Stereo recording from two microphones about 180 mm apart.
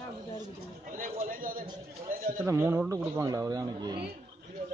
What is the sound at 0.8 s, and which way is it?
Chatter, 50° right (ahead or behind).